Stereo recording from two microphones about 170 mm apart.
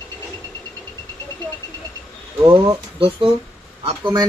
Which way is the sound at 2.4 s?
20° right (ahead or behind).